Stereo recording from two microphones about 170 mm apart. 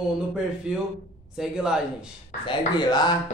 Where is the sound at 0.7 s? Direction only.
5° right (ahead or behind).